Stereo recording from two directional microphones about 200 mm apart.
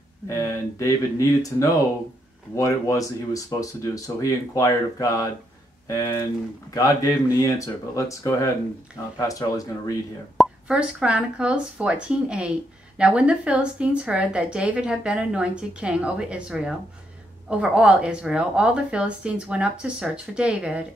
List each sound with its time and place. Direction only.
0.4 s speech: 15° left (ahead or behind)
10.3 s speech: 5° right (ahead or behind)